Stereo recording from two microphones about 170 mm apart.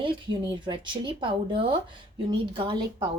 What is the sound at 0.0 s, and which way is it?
A woman's voice, 30° right (ahead or behind).